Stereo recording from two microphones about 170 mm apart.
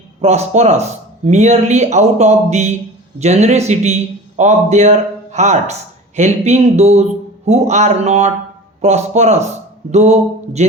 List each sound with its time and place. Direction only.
0.2 s speech: 40° right (ahead or behind)